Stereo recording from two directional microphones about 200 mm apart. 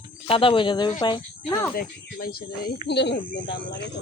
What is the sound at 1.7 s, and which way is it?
Speech, 50° left (ahead or behind).